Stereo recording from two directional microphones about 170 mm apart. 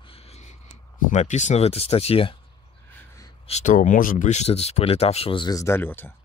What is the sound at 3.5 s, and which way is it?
Speech, 45° left (ahead or behind).